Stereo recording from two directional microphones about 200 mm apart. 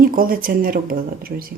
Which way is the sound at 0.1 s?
45° right (ahead or behind).